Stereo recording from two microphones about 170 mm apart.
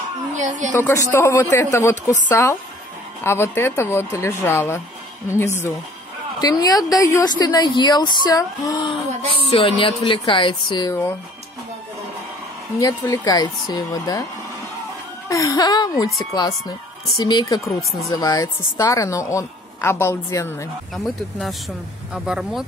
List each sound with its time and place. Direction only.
0.4 s a woman's voice: 45° right (ahead or behind)
0.7 s a woman's voice: 15° left (ahead or behind)
12.7 s a woman's voice: 20° left (ahead or behind)
15.2 s a woman's voice: 20° left (ahead or behind)
17.6 s speech: centre (ahead or behind)
18.1 s a woman's voice: 20° left (ahead or behind)
20.9 s speech: centre (ahead or behind)